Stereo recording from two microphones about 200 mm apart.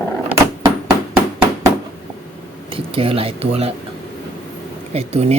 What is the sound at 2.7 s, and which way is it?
Speech, 25° right (ahead or behind).